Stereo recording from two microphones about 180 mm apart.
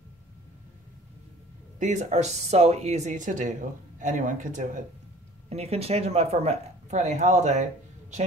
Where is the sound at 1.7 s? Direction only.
40° right (ahead or behind).